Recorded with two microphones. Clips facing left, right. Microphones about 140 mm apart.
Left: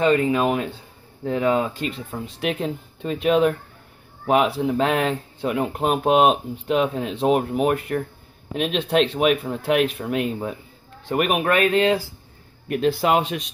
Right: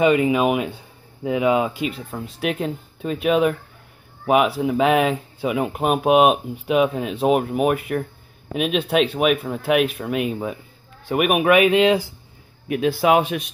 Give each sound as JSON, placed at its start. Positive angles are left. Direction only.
{"t": 0.0, "sound": "speech", "side_deg": -15}
{"t": 12.6, "sound": "speech", "side_deg": 0}